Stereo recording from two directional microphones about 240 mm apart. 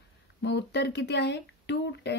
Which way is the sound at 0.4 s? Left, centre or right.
Left.